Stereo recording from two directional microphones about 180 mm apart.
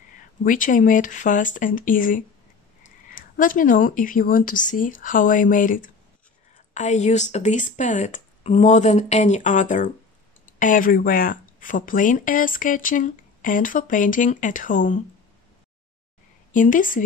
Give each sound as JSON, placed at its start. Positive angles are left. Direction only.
{"t": 0.4, "sound": "speech", "side_deg": 45}
{"t": 16.5, "sound": "speech", "side_deg": 45}